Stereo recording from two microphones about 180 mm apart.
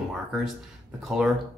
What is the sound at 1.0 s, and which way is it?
Speech, centre (ahead or behind).